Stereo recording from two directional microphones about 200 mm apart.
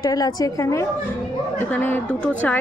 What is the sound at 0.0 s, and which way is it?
A woman's voice, 20° left (ahead or behind).